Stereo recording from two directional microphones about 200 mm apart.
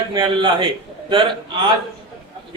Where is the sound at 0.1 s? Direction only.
25° right (ahead or behind).